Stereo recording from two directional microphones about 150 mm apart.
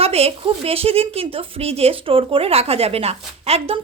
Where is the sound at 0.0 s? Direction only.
40° right (ahead or behind).